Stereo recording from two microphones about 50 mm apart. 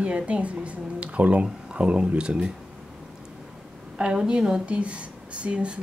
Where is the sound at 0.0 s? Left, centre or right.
Right.